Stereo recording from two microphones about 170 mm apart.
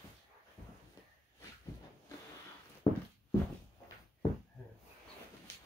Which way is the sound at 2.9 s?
25° left (ahead or behind).